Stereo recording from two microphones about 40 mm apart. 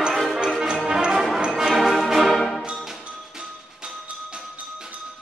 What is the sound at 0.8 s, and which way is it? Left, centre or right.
Music, centre.